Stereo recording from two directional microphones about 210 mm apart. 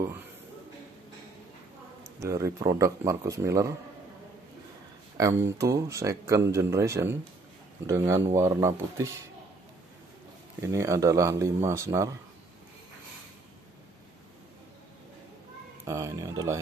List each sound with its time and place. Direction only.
2.1 s speech: 15° right (ahead or behind)
5.1 s speech: 15° right (ahead or behind)
10.7 s speech: 15° right (ahead or behind)
15.8 s speech: 15° right (ahead or behind)